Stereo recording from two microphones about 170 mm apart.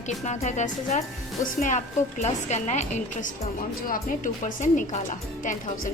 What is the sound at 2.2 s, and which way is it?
Speech, 40° left (ahead or behind).